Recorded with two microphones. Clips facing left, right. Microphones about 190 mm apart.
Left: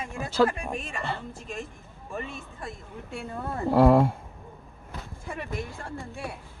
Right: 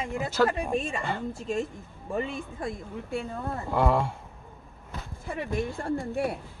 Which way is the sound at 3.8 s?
55° left (ahead or behind).